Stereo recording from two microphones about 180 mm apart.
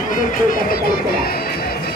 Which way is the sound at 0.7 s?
55° left (ahead or behind).